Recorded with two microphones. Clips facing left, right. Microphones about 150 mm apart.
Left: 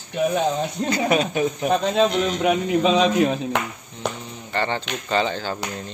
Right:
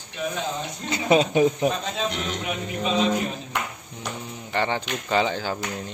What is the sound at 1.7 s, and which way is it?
A man's voice, 75° left (ahead or behind).